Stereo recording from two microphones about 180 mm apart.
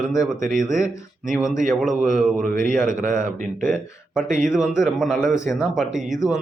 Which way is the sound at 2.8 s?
45° right (ahead or behind).